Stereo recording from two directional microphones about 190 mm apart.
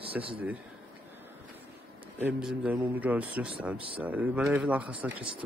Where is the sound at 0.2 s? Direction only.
5° right (ahead or behind).